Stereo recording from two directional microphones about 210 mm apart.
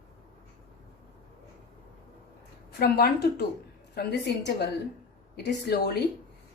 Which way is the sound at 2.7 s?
50° left (ahead or behind).